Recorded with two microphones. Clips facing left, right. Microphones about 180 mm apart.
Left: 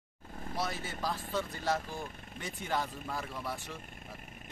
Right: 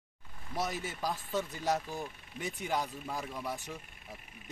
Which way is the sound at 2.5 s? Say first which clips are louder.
Right 1 dB; 15° right (ahead or behind).